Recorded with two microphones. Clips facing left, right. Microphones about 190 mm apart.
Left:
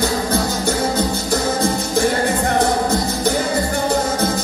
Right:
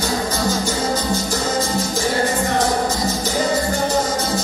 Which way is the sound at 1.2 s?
60° left (ahead or behind).